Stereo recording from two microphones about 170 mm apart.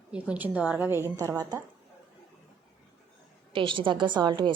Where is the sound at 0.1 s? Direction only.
10° right (ahead or behind).